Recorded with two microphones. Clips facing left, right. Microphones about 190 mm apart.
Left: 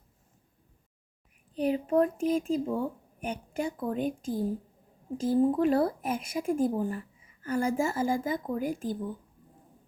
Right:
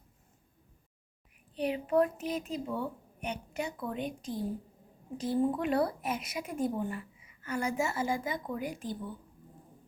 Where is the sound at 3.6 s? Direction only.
45° left (ahead or behind).